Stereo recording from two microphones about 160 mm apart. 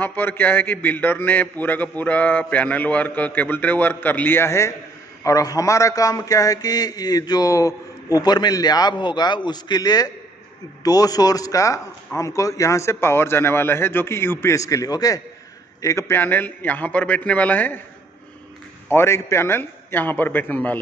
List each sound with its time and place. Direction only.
0.0 s a man's voice: 10° left (ahead or behind)
18.9 s a man's voice: 15° left (ahead or behind)